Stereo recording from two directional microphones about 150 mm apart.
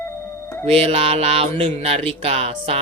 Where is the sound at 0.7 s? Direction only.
40° right (ahead or behind).